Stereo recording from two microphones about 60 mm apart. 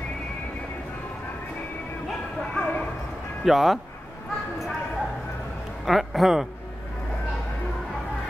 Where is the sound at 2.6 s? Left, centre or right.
Left.